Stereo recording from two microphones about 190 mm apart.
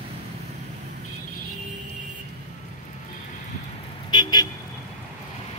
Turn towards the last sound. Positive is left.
turn(degrees=25)  # may be behind; listen again after turning